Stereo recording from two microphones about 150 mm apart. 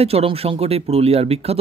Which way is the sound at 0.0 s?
40° right (ahead or behind).